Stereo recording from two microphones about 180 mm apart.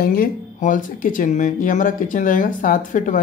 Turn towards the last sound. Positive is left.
turn(degrees=45)  # may be behind; listen again after turning